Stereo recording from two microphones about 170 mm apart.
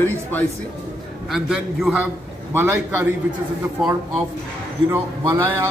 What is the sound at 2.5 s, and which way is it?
Speech, 15° right (ahead or behind).